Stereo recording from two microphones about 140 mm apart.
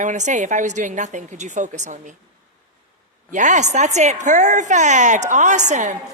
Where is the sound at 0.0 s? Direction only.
60° right (ahead or behind).